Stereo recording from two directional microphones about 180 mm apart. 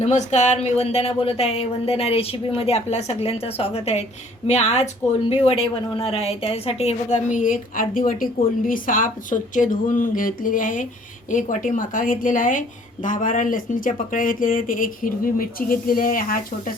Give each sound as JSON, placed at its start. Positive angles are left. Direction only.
{"t": 0.0, "sound": "a woman's voice", "side_deg": 40}